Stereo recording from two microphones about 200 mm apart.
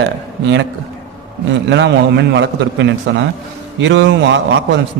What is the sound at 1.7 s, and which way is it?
A man's voice, 60° right (ahead or behind).